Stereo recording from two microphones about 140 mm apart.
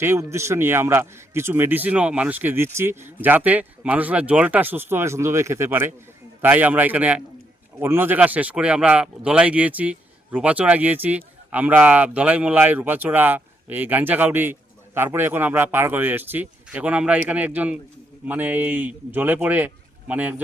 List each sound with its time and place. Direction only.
0.0 s speech: 20° right (ahead or behind)